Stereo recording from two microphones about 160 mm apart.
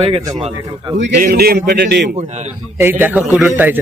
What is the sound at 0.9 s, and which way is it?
A man's voice, 80° right.